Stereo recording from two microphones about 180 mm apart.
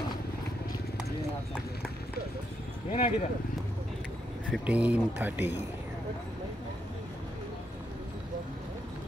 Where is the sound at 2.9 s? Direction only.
40° left (ahead or behind).